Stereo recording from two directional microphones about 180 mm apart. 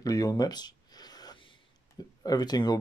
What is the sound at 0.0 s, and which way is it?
Speech, 20° left (ahead or behind).